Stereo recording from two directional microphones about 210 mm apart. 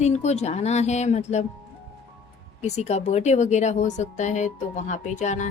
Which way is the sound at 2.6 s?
30° left (ahead or behind).